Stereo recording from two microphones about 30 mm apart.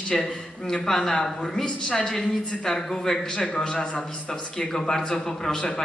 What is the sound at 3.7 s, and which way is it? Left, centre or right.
Speech, left.